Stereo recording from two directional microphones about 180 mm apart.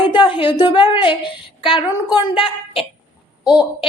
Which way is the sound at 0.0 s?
30° left (ahead or behind).